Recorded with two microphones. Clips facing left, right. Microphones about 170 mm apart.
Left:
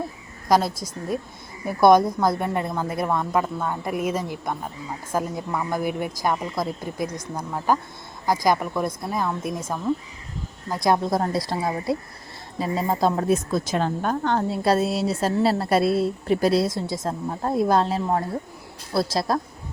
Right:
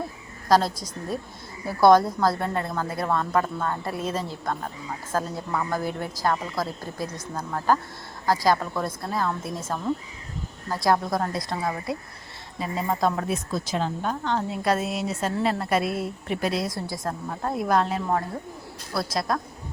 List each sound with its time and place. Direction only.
0.4 s a woman's voice: 15° left (ahead or behind); by 13.3 s 30° left (ahead or behind)
13.3 s speech: 50° left (ahead or behind)
14.5 s a woman's voice: 30° left (ahead or behind)
16.6 s a woman's voice: 20° left (ahead or behind)